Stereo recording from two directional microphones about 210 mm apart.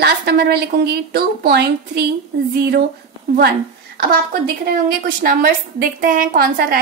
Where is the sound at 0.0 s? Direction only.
50° right (ahead or behind).